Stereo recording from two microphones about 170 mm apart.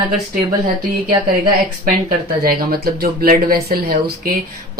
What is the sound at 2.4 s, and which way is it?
Speech, 60° right (ahead or behind).